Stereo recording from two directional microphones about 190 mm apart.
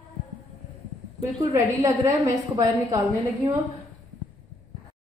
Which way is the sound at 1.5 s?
15° right (ahead or behind).